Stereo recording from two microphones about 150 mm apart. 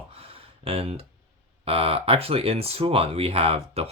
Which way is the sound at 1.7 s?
40° right (ahead or behind).